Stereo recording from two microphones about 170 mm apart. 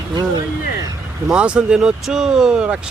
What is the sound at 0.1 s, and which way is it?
Speech, 25° right (ahead or behind).